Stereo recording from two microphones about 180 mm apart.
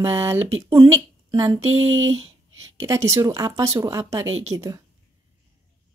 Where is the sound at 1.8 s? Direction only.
90° right.